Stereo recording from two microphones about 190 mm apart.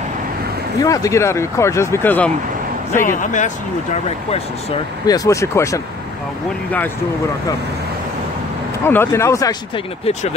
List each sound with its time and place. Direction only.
0.7 s speech: 20° left (ahead or behind)
3.2 s speech: 40° left (ahead or behind)
5.0 s speech: 20° left (ahead or behind)
8.8 s speech: 10° left (ahead or behind)